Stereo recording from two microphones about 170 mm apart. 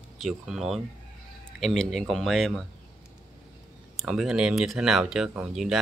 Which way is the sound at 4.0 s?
Centre (ahead or behind).